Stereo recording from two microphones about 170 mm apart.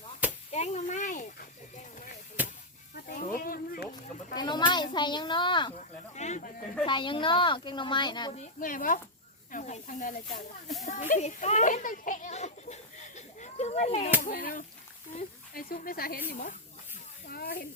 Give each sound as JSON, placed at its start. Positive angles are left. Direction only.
{"t": 0.3, "sound": "a sound", "side_deg": 40}
{"t": 2.4, "sound": "a sound", "side_deg": -10}
{"t": 2.9, "sound": "snake", "side_deg": 55}
{"t": 4.4, "sound": "a sound", "side_deg": 25}
{"t": 5.7, "sound": "snake", "side_deg": 40}
{"t": 6.8, "sound": "a woman's voice", "side_deg": 30}
{"t": 8.3, "sound": "a child's voice", "side_deg": 45}
{"t": 14.3, "sound": "speech", "side_deg": 55}
{"t": 17.2, "sound": "snake", "side_deg": 60}